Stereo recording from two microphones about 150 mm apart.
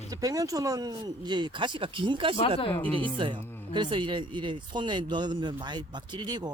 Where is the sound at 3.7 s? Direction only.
30° right (ahead or behind).